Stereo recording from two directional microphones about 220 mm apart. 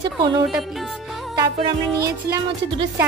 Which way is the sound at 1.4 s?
20° right (ahead or behind).